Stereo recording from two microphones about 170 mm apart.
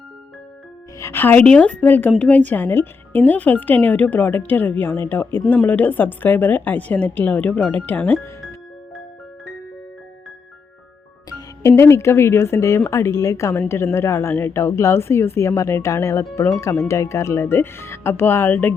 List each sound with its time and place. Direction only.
0.9 s a woman's voice: 15° left (ahead or behind)
11.3 s music: 20° left (ahead or behind)
11.7 s a woman's voice: 15° left (ahead or behind)